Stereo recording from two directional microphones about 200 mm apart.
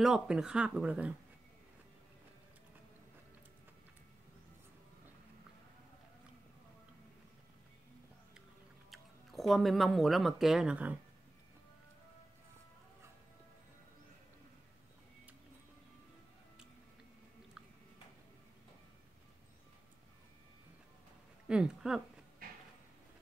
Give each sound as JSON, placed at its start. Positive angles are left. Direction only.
{"t": 0.0, "sound": "speech", "side_deg": -5}
{"t": 8.9, "sound": "speech", "side_deg": 0}
{"t": 21.5, "sound": "speech", "side_deg": -5}
{"t": 22.4, "sound": "a sound", "side_deg": -45}